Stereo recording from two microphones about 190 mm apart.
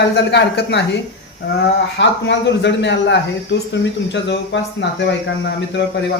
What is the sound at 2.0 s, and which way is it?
A man's voice, 65° left (ahead or behind).